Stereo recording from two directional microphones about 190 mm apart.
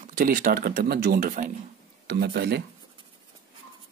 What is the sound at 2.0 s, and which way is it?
Speech, 55° right (ahead or behind).